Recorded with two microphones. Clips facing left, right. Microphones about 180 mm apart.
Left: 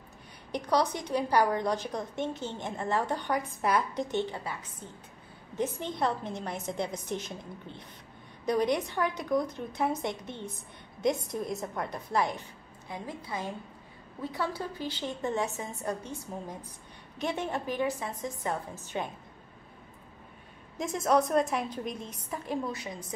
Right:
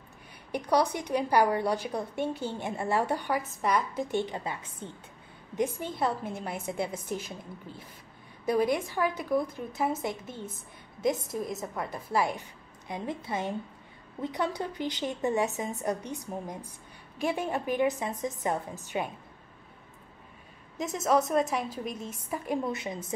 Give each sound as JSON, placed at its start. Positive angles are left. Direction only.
{"t": 0.5, "sound": "a woman's voice", "side_deg": -10}
{"t": 5.6, "sound": "a woman's voice", "side_deg": -10}
{"t": 12.8, "sound": "a woman's voice", "side_deg": -20}
{"t": 20.7, "sound": "speech", "side_deg": 0}
{"t": 22.7, "sound": "a woman's voice", "side_deg": -25}